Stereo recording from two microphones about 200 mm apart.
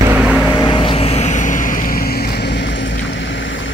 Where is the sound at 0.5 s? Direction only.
25° left (ahead or behind).